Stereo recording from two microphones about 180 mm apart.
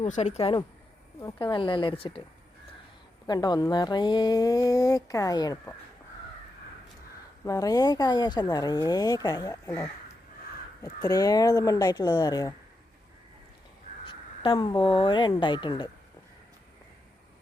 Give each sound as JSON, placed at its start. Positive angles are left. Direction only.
{"t": 0.0, "sound": "speech", "side_deg": 40}
{"t": 3.2, "sound": "speech", "side_deg": 20}
{"t": 7.4, "sound": "speech", "side_deg": 20}
{"t": 11.0, "sound": "speech", "side_deg": 20}
{"t": 14.0, "sound": "crow", "side_deg": 30}
{"t": 14.7, "sound": "speech", "side_deg": 25}